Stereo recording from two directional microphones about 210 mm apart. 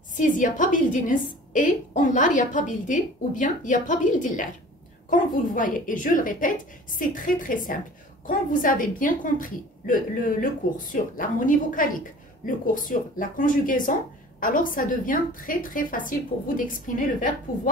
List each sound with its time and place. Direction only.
0.1 s a woman's voice: 40° left (ahead or behind)